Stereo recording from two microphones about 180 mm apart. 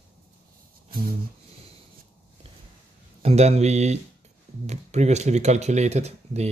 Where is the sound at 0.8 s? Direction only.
55° right (ahead or behind).